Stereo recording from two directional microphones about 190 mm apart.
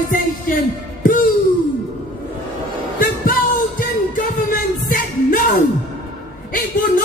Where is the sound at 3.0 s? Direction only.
45° left (ahead or behind).